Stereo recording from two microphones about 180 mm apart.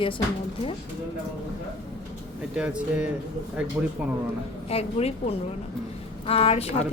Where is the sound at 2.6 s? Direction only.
5° right (ahead or behind).